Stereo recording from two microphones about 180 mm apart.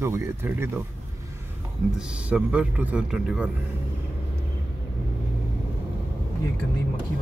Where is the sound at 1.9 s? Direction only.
5° right (ahead or behind).